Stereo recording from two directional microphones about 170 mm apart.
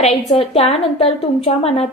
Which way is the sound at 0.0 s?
40° left (ahead or behind).